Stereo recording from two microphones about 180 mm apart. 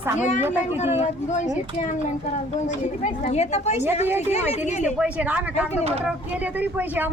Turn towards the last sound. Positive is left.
turn(degrees=-10)  # may be behind; listen again after turning